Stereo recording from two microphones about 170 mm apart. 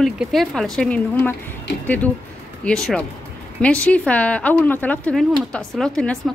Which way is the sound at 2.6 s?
5° left (ahead or behind).